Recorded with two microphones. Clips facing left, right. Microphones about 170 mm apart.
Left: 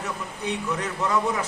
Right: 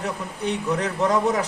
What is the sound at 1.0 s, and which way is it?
Speech, 40° right (ahead or behind).